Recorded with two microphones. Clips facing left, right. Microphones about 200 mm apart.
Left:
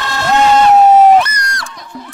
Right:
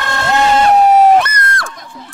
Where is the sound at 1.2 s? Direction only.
55° right (ahead or behind).